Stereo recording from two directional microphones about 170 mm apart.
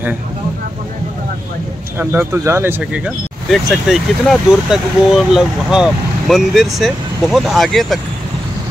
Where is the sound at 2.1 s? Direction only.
15° right (ahead or behind).